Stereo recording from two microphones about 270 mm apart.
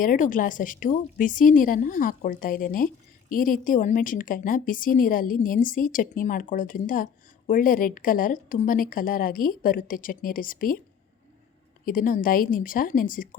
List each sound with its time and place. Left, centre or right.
0.0 s a woman's voice: left
11.9 s a woman's voice: left